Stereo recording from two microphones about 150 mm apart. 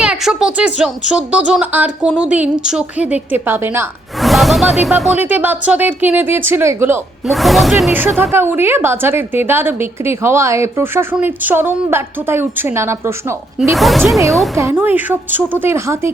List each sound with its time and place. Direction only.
0.0 s a woman's voice: 5° right (ahead or behind)
4.2 s a woman's voice: centre (ahead or behind); by 7.0 s 15° right (ahead or behind)
7.3 s speech: centre (ahead or behind)
8.2 s a woman's voice: 15° right (ahead or behind)
13.7 s speech: centre (ahead or behind)
14.5 s a woman's voice: 15° right (ahead or behind)